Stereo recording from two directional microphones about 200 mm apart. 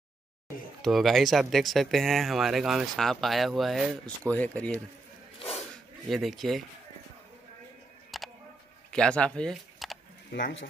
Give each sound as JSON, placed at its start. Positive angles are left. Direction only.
{"t": 0.8, "sound": "speech", "side_deg": 0}
{"t": 6.0, "sound": "speech", "side_deg": 0}
{"t": 8.1, "sound": "music", "side_deg": 0}
{"t": 8.9, "sound": "speech", "side_deg": 5}
{"t": 10.4, "sound": "speech", "side_deg": 65}